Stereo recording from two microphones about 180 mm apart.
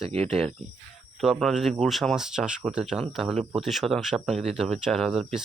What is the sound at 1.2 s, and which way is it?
Speech, centre (ahead or behind).